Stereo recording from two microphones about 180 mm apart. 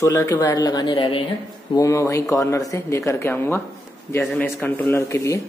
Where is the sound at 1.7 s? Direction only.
15° left (ahead or behind).